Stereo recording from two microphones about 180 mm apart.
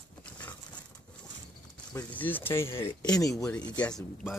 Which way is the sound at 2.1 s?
10° left (ahead or behind).